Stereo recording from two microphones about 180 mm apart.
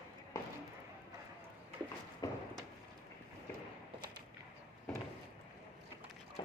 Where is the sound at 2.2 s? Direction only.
20° left (ahead or behind).